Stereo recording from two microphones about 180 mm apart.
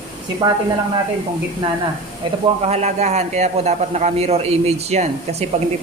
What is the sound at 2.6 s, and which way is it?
A man's voice, 40° right (ahead or behind).